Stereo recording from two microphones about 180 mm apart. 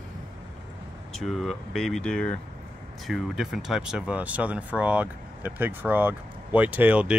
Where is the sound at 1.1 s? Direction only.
Centre (ahead or behind).